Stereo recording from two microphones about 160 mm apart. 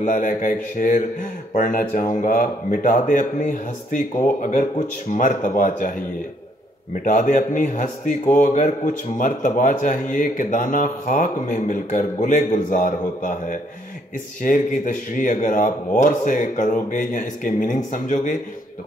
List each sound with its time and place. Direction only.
0.0 s speech: 55° left (ahead or behind)